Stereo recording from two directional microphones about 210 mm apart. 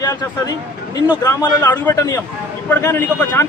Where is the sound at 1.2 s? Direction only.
10° left (ahead or behind).